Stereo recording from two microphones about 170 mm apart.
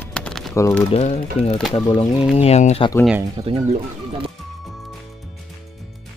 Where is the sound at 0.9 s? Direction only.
40° left (ahead or behind).